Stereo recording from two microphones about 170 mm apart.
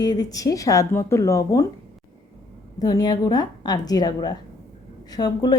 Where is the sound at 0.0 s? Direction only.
25° left (ahead or behind).